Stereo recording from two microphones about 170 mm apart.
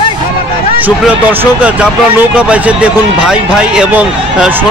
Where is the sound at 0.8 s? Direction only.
10° right (ahead or behind).